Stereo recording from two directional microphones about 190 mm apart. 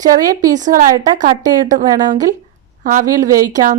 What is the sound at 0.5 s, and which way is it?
Speech, 45° right (ahead or behind).